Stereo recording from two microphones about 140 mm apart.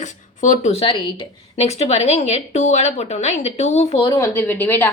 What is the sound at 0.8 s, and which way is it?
Speech, 35° left (ahead or behind).